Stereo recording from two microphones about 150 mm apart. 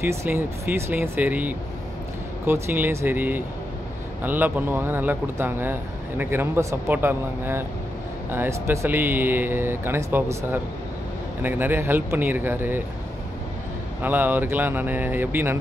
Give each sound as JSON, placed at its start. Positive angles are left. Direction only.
{"t": 0.0, "sound": "a man's voice", "side_deg": -15}
{"t": 14.0, "sound": "a man's voice", "side_deg": -15}